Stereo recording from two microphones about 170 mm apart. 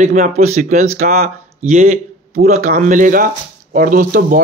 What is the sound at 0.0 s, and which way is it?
Speech, 45° right (ahead or behind).